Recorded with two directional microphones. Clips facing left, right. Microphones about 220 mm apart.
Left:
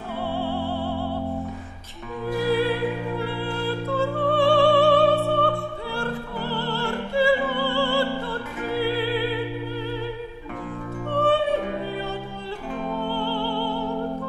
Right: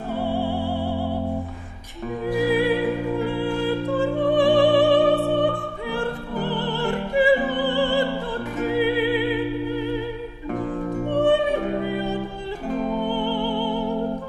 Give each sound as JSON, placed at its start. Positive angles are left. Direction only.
{"t": 0.1, "sound": "music", "side_deg": -15}
{"t": 5.3, "sound": "opera", "side_deg": -15}
{"t": 6.4, "sound": "music", "side_deg": -15}
{"t": 11.1, "sound": "music", "side_deg": -15}
{"t": 12.6, "sound": "music", "side_deg": -40}
{"t": 12.9, "sound": "music", "side_deg": -15}